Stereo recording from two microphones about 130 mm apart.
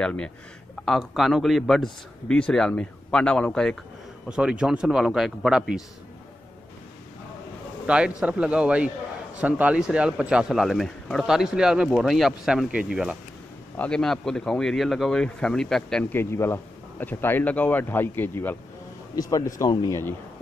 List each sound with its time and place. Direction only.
0.0 s speech: 5° left (ahead or behind)
4.3 s speech: 5° right (ahead or behind)
7.8 s a man's voice: 10° right (ahead or behind)
13.7 s speech: 5° left (ahead or behind)
16.1 s speech: 20° left (ahead or behind)
19.1 s speech: 25° left (ahead or behind)